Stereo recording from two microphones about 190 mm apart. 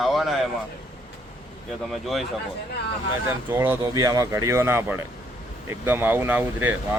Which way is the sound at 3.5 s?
10° right (ahead or behind).